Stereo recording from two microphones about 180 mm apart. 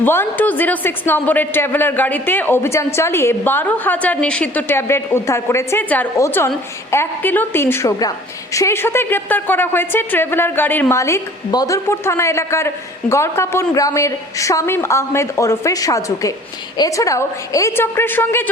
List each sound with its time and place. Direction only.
0.0 s a woman's voice: 10° left (ahead or behind)